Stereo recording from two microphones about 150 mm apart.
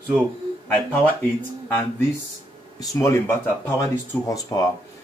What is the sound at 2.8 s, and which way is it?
Speech, 20° left (ahead or behind).